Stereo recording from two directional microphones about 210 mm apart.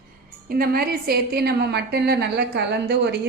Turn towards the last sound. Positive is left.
turn(degrees=-55)  # may be behind; listen again after turning